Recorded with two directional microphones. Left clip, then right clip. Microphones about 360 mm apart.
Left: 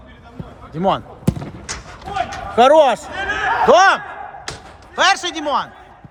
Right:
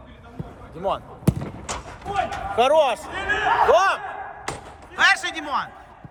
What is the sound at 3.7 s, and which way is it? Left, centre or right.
Speech, left.